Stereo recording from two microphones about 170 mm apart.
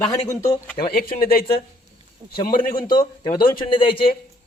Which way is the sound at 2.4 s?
55° left (ahead or behind).